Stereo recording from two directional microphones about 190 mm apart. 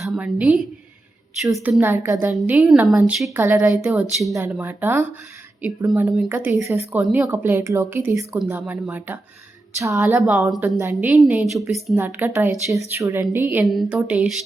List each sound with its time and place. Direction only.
0.0 s a woman's voice: 5° right (ahead or behind)
1.8 s a woman's voice: 15° right (ahead or behind)
3.3 s speech: 10° right (ahead or behind)
10.2 s a woman's voice: 5° right (ahead or behind)